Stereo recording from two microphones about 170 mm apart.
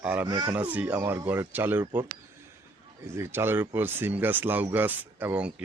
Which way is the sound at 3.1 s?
15° right (ahead or behind).